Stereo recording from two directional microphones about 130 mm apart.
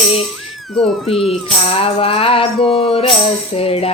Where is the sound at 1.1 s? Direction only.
Centre (ahead or behind).